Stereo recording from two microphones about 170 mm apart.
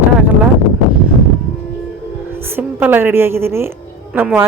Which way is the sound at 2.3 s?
15° right (ahead or behind).